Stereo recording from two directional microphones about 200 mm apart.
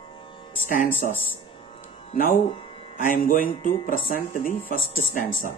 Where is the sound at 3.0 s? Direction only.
45° left (ahead or behind).